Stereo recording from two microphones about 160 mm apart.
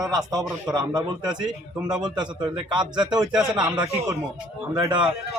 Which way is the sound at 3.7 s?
25° right (ahead or behind).